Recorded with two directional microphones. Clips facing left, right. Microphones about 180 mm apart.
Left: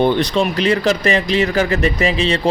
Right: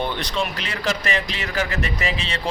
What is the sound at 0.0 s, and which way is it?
Speech, 60° left (ahead or behind).